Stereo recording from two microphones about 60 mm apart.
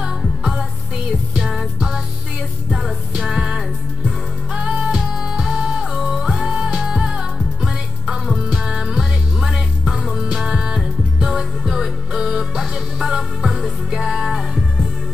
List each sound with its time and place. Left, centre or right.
0.4 s music: centre
4.6 s music: centre